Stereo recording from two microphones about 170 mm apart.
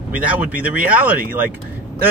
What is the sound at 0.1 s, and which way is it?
Speech, 10° right (ahead or behind).